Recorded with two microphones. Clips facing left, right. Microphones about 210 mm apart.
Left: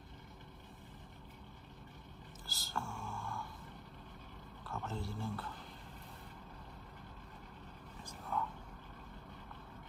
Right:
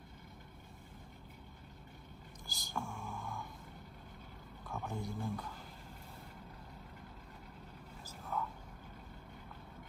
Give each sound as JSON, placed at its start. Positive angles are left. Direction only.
{"t": 2.4, "sound": "speech", "side_deg": -15}
{"t": 4.8, "sound": "speech", "side_deg": -15}
{"t": 8.3, "sound": "vehicle", "side_deg": -5}